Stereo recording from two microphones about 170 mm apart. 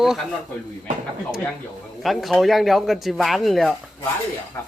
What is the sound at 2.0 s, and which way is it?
Speech, centre (ahead or behind).